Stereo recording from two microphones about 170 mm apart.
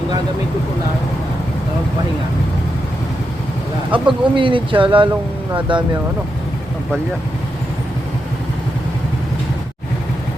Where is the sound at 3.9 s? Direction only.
30° right (ahead or behind).